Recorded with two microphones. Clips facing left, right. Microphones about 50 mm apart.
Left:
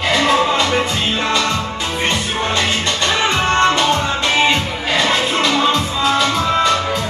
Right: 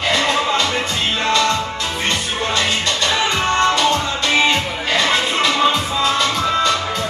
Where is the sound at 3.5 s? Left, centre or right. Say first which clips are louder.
Left 2 dB; left.